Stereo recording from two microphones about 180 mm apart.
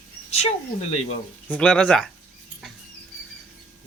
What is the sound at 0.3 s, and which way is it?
Speech, 35° left (ahead or behind).